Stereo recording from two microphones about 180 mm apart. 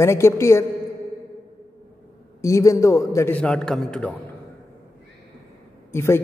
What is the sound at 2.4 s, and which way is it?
A man's voice, 15° left (ahead or behind).